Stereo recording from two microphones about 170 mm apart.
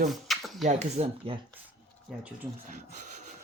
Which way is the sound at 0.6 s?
40° right (ahead or behind).